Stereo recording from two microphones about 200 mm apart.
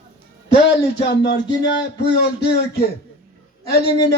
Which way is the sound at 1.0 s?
55° left (ahead or behind).